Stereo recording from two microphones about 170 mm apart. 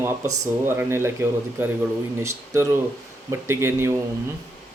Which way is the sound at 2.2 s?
15° right (ahead or behind).